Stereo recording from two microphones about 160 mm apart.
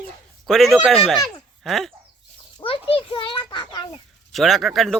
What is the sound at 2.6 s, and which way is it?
Children playing, 35° left (ahead or behind).